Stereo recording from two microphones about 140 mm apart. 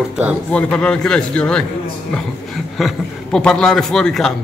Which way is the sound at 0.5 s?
10° left (ahead or behind).